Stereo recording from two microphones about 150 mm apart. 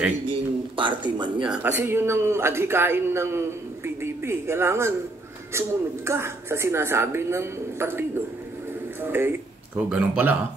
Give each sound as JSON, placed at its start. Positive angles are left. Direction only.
{"t": 0.3, "sound": "a sound", "side_deg": -35}
{"t": 1.4, "sound": "a man's voice", "side_deg": -10}
{"t": 9.0, "sound": "a man's voice", "side_deg": -15}